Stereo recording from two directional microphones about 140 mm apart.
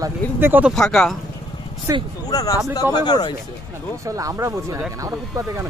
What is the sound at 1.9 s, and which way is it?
Speech, 25° right (ahead or behind).